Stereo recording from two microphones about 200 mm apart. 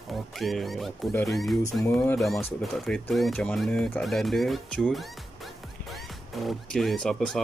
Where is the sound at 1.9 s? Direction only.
10° left (ahead or behind).